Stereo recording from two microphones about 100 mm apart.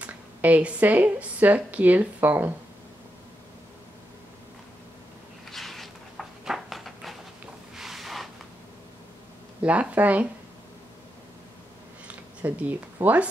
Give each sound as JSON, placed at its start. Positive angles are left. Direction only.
{"t": 0.0, "sound": "speech", "side_deg": -15}
{"t": 5.5, "sound": "a sound", "side_deg": 0}
{"t": 9.6, "sound": "speech", "side_deg": -15}
{"t": 12.4, "sound": "speech", "side_deg": -15}